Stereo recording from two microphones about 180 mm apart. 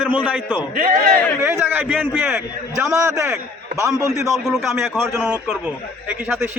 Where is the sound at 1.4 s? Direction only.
10° right (ahead or behind).